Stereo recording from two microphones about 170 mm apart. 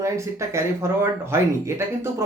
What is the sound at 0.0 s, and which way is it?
Speech, 15° right (ahead or behind).